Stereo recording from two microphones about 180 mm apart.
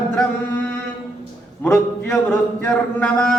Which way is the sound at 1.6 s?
5° left (ahead or behind).